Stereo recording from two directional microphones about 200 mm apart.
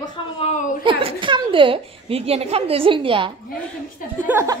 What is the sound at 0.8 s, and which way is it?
A woman's voice, 25° right (ahead or behind).